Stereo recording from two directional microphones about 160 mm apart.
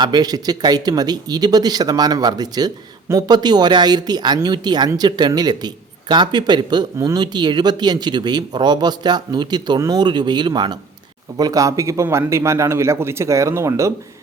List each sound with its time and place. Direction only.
0.0 s a man's voice: 25° right (ahead or behind)